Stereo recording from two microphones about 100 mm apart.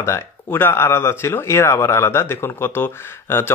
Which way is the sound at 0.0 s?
25° left (ahead or behind).